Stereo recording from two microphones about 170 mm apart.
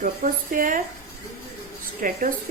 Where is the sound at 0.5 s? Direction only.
55° right (ahead or behind).